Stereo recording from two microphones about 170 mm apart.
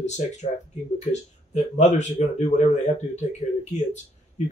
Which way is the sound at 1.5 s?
45° left (ahead or behind).